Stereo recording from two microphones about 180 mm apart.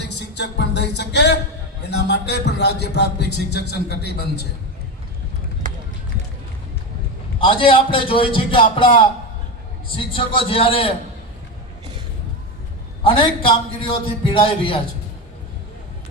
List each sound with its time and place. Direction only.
0.0 s music: 70° left (ahead or behind)
1.9 s a man's voice: 70° left (ahead or behind)
7.3 s a man's voice: 30° left (ahead or behind)
10.1 s a man's voice: 30° left (ahead or behind)
13.1 s a man's voice: 30° left (ahead or behind)